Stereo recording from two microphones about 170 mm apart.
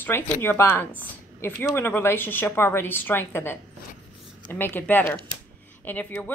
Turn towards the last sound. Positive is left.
turn(degrees=10)  # may be behind; listen again after turning